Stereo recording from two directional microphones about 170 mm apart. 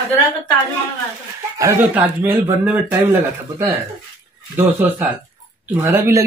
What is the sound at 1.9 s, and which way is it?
A man's voice, 15° right (ahead or behind).